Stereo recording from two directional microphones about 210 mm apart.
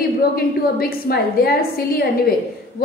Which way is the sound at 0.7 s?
45° left (ahead or behind).